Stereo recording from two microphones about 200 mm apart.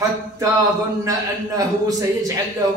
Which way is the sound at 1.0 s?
15° right (ahead or behind).